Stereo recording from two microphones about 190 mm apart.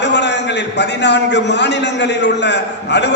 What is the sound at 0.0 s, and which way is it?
A man's voice, 65° left (ahead or behind).